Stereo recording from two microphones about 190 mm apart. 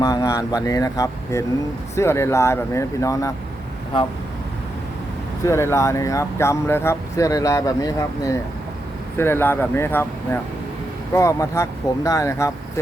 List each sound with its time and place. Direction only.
0.0 s speech: 15° left (ahead or behind)
5.5 s speech: 15° left (ahead or behind)
11.1 s speech: 15° left (ahead or behind)